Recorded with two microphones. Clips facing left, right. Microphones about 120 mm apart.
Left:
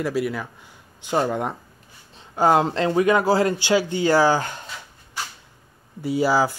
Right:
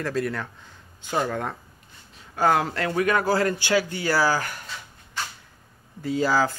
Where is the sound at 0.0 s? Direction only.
10° left (ahead or behind).